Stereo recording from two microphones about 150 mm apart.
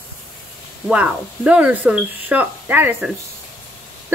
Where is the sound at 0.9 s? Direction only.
10° right (ahead or behind).